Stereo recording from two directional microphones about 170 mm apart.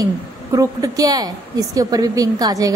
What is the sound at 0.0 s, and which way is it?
A woman's voice, 20° right (ahead or behind).